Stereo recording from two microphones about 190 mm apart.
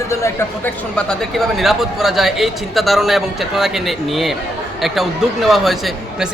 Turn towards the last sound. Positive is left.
turn(degrees=0)  # may be behind; listen again after turning